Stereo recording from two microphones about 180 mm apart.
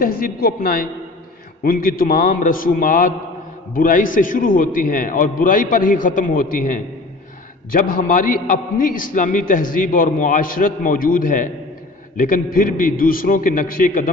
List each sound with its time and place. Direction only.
0.0 s a man's voice: 55° left (ahead or behind)